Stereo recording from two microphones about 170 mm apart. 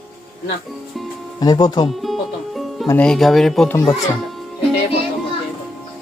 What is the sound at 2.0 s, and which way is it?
Music, centre (ahead or behind).